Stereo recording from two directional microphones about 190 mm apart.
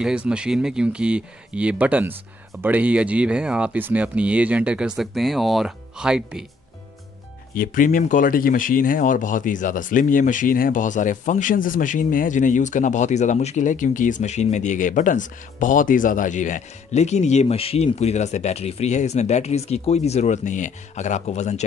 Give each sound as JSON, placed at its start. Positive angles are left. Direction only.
{"t": 0.0, "sound": "speech", "side_deg": -5}
{"t": 7.5, "sound": "speech", "side_deg": 45}